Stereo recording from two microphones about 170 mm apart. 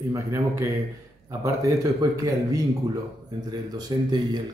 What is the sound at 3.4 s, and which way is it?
Speech, 25° right (ahead or behind).